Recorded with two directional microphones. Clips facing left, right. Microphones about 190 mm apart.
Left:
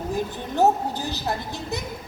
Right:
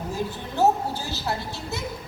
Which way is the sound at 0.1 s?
15° left (ahead or behind).